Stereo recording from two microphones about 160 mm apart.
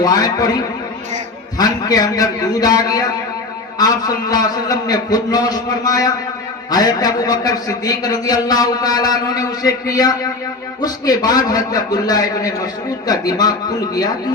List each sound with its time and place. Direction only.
0.0 s a man's voice: 25° left (ahead or behind)
1.5 s a man's voice: 25° left (ahead or behind)